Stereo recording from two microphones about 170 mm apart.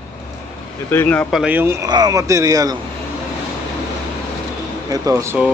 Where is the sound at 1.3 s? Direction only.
5° right (ahead or behind); by 2.7 s 20° right (ahead or behind).